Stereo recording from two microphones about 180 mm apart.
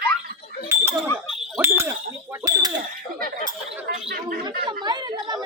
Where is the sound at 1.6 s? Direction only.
15° right (ahead or behind).